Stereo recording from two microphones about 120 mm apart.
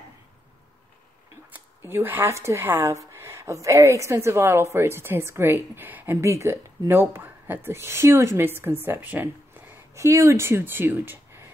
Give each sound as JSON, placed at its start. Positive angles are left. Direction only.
{"t": 1.5, "sound": "speech", "side_deg": -20}